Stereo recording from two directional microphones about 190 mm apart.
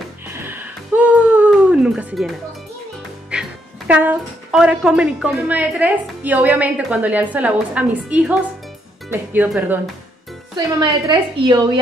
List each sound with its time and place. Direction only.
0.3 s a sound: 10° right (ahead or behind)
3.3 s speech: 5° right (ahead or behind)
10.5 s a woman's voice: 20° right (ahead or behind)